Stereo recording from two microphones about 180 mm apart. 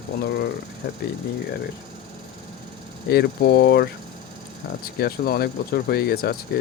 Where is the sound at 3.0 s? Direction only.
65° left (ahead or behind).